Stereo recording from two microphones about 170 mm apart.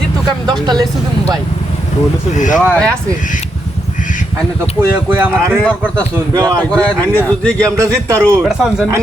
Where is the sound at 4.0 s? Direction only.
50° left (ahead or behind).